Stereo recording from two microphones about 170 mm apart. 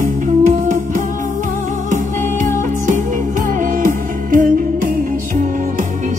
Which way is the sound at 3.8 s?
50° right (ahead or behind).